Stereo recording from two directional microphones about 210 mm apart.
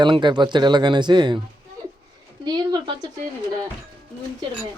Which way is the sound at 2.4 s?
20° right (ahead or behind).